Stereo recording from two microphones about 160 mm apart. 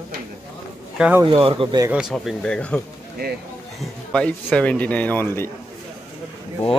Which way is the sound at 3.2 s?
75° right (ahead or behind).